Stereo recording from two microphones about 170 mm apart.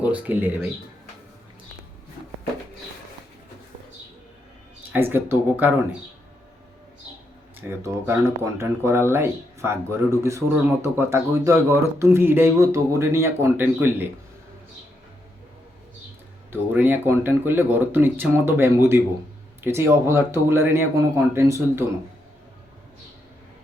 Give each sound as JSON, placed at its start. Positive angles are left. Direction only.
{"t": 0.0, "sound": "speech", "side_deg": -10}
{"t": 4.9, "sound": "speech", "side_deg": -10}
{"t": 7.7, "sound": "speech", "side_deg": -15}
{"t": 16.5, "sound": "speech", "side_deg": -10}